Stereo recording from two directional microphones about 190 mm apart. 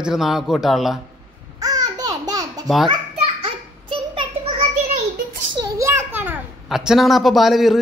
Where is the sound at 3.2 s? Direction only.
30° right (ahead or behind).